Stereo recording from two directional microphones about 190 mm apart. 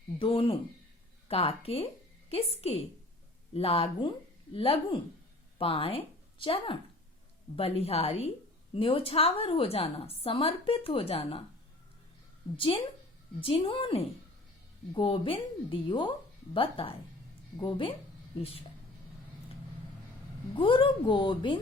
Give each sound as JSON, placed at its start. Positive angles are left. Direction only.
{"t": 0.2, "sound": "a woman's voice", "side_deg": 30}
{"t": 12.5, "sound": "a woman's voice", "side_deg": 30}
{"t": 20.6, "sound": "a woman's voice", "side_deg": 25}